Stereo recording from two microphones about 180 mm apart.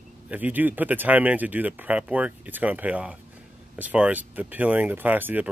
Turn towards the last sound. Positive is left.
turn(degrees=-10)  # may be behind; listen again after turning